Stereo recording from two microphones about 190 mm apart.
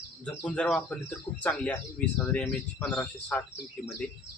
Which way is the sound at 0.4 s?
5° left (ahead or behind).